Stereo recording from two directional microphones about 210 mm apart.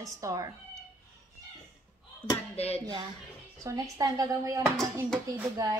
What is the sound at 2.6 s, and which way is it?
Speech, 30° left (ahead or behind).